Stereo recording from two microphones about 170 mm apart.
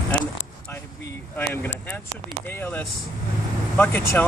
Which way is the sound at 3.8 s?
10° left (ahead or behind).